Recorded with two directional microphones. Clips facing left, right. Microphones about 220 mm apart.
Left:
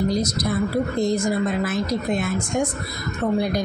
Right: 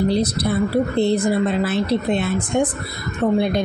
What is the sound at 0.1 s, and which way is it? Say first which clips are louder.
A woman's voice: right 3 dB; 30° right (ahead or behind).